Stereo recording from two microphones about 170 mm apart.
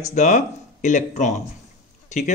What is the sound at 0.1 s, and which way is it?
Speech, 45° left (ahead or behind).